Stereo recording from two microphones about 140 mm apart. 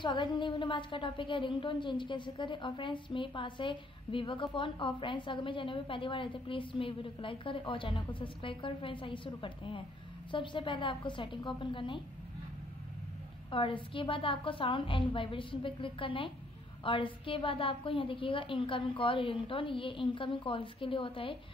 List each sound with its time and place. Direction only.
0.0 s a woman's voice: 35° left (ahead or behind)
13.5 s a woman's voice: 40° left (ahead or behind)